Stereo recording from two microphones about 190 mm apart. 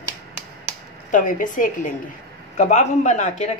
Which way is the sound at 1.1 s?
45° left (ahead or behind).